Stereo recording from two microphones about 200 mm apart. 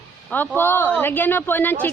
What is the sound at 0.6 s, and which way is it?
Speech, 10° left (ahead or behind).